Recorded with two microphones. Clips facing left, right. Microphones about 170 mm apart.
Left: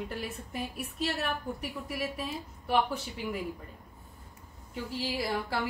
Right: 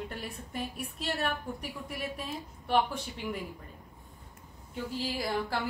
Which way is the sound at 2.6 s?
Centre (ahead or behind).